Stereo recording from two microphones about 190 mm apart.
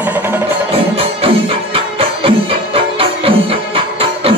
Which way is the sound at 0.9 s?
30° right (ahead or behind).